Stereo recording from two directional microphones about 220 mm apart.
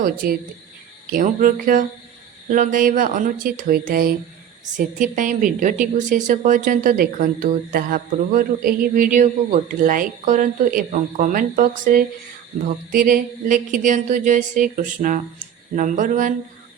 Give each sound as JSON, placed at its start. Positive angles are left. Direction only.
{"t": 0.0, "sound": "a woman's voice", "side_deg": -40}